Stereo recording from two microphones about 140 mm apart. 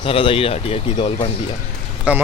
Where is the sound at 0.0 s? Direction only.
40° left (ahead or behind).